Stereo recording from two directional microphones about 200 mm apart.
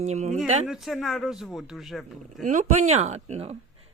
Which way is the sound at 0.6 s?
Centre (ahead or behind).